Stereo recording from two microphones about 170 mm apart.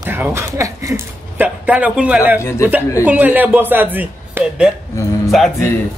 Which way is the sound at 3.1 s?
10° right (ahead or behind).